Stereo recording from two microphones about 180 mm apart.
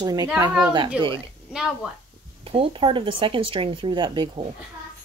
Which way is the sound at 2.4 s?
30° right (ahead or behind).